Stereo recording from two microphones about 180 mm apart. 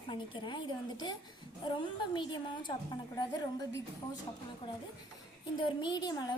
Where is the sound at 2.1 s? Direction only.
25° left (ahead or behind).